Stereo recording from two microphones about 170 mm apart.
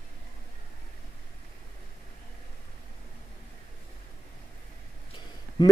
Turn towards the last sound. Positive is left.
turn(degrees=25)  # may be behind; listen again after turning